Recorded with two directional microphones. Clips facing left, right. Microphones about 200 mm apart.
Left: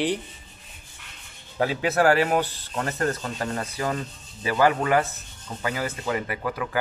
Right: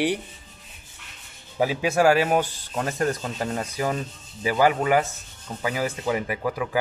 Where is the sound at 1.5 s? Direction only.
10° right (ahead or behind).